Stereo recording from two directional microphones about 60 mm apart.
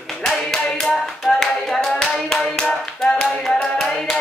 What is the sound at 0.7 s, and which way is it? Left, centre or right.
Hands, centre.